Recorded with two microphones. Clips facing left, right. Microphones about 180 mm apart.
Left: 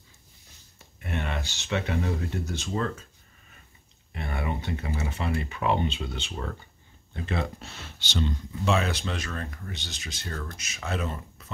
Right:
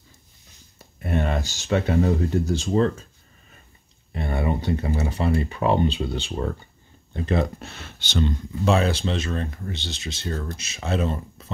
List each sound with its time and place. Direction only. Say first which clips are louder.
0.7 s speech: right 8 dB; 40° right (ahead or behind)
4.1 s speech: right 7 dB; 30° right (ahead or behind)
7.5 s speech: right 4 dB; 55° right (ahead or behind)
8.6 s speech: right 5 dB; 35° right (ahead or behind)